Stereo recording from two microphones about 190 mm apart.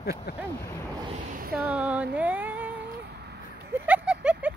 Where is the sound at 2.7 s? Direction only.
60° right (ahead or behind).